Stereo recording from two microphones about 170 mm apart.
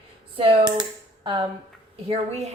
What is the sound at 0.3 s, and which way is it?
Speech, 30° right (ahead or behind).